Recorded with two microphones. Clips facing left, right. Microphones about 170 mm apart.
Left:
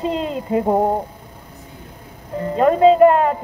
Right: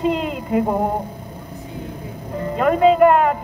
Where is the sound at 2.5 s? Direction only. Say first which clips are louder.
Left 2 dB; 30° left (ahead or behind).